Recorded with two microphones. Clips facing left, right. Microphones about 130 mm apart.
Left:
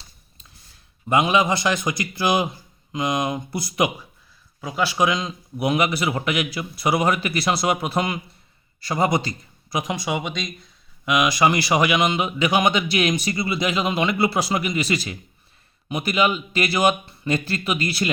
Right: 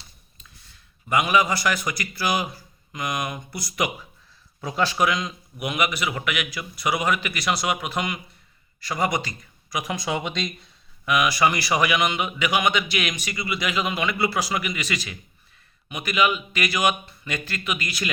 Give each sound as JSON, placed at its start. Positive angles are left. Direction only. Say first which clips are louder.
{"t": 1.0, "sound": "a man's voice", "louder": "left 2 dB", "side_deg": 25}
{"t": 4.6, "sound": "speech", "louder": "even", "side_deg": 5}
{"t": 4.9, "sound": "a man's voice", "louder": "left 2 dB", "side_deg": 20}
{"t": 10.0, "sound": "speech", "louder": "left 1 dB", "side_deg": 10}
{"t": 11.0, "sound": "a man's voice", "louder": "left 2 dB", "side_deg": 20}